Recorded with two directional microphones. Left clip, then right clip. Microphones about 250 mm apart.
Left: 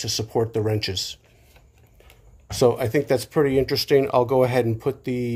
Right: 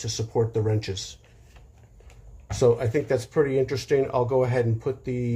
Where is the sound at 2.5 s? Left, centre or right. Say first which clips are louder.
Left 2 dB; left.